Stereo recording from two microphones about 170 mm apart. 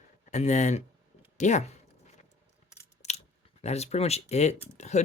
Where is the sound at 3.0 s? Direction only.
40° left (ahead or behind).